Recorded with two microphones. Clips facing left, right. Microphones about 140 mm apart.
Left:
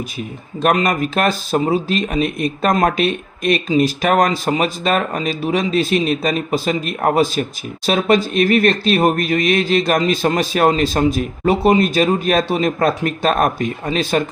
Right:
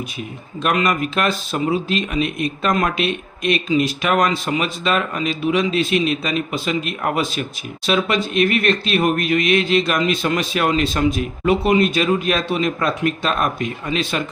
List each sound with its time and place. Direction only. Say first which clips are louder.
0.6 s speech: left 3 dB; 40° left (ahead or behind)